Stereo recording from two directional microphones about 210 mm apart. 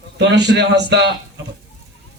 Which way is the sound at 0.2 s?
55° right (ahead or behind).